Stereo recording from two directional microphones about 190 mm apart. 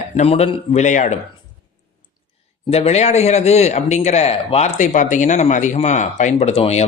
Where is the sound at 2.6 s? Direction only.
35° left (ahead or behind).